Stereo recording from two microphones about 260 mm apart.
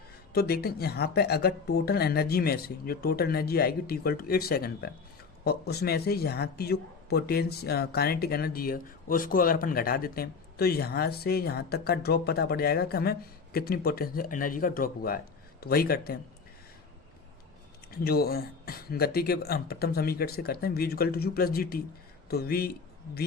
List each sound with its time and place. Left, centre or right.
0.3 s speech: left
17.9 s speech: left